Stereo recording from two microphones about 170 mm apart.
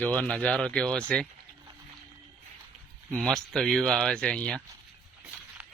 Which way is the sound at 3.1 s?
5° left (ahead or behind).